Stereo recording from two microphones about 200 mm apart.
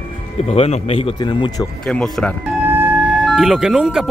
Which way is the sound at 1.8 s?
5° left (ahead or behind).